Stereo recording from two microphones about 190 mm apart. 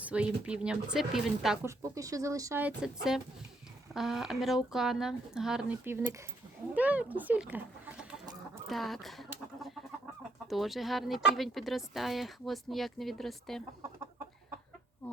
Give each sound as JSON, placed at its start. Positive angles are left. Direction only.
{"t": 0.0, "sound": "speech", "side_deg": -5}
{"t": 1.6, "sound": "speech", "side_deg": -15}